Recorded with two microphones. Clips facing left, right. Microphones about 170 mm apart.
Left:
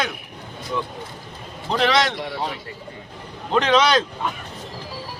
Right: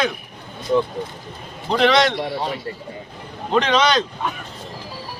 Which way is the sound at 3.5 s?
Centre (ahead or behind).